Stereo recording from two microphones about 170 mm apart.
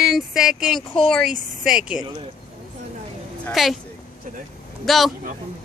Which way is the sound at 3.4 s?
Centre (ahead or behind).